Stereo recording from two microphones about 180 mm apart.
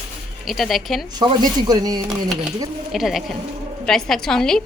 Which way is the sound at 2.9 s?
Centre (ahead or behind).